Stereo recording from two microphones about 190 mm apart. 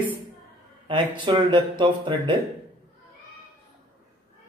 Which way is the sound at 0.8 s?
25° right (ahead or behind).